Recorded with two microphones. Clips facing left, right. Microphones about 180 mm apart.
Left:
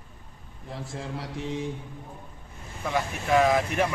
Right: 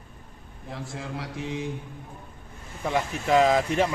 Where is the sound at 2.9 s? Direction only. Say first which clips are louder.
Right 2 dB; 20° right (ahead or behind).